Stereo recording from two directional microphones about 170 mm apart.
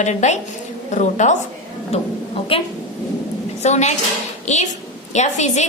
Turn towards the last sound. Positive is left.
turn(degrees=45)  # may be behind; listen again after turning